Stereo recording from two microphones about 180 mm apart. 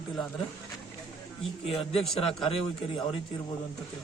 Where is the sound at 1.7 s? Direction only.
30° left (ahead or behind).